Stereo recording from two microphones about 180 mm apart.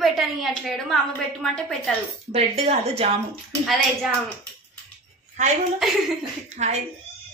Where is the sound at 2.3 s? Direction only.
35° right (ahead or behind).